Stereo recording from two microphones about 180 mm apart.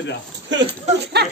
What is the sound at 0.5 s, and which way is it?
Speech, 90° right.